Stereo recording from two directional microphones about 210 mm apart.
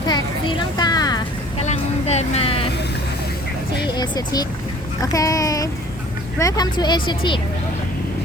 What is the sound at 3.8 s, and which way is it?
A woman's voice, 20° left (ahead or behind).